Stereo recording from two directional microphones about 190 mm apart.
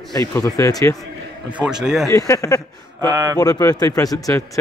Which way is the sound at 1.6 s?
5° right (ahead or behind).